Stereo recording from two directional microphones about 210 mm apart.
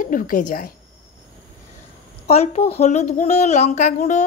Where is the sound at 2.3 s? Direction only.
30° left (ahead or behind).